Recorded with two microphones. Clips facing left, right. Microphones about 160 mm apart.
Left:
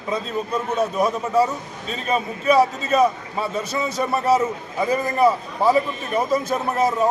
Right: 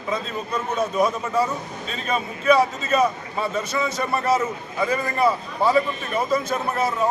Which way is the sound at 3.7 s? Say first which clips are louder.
Even; 35° left (ahead or behind).